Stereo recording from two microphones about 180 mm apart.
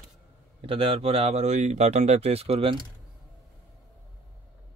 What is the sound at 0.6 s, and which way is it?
Speech, 30° right (ahead or behind).